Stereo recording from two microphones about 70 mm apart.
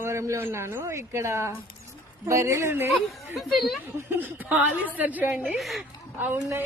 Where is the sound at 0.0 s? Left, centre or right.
Right.